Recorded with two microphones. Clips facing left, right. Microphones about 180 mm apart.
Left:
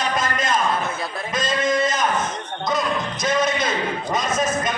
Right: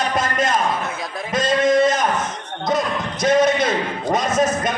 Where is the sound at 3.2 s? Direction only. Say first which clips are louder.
Right 7 dB; 65° right (ahead or behind).